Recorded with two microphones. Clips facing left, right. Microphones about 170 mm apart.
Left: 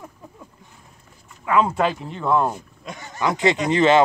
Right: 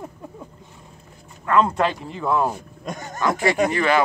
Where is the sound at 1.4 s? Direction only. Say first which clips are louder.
Even; 5° left (ahead or behind).